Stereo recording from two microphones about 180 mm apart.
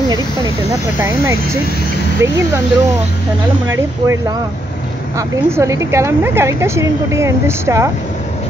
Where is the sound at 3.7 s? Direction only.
15° right (ahead or behind).